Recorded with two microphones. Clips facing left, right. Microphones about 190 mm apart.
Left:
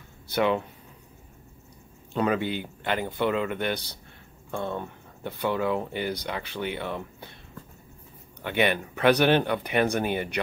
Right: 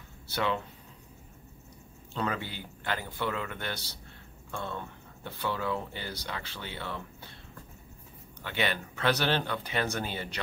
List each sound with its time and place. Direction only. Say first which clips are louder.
0.3 s speech: left 7 dB; 15° left (ahead or behind)
2.1 s speech: left 8 dB; 15° left (ahead or behind)
8.5 s speech: left 7 dB; 15° left (ahead or behind)